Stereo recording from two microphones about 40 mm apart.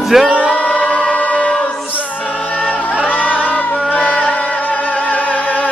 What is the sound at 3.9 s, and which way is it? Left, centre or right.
Music, left.